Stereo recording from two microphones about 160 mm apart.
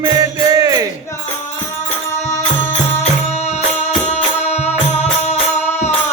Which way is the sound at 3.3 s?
45° left (ahead or behind).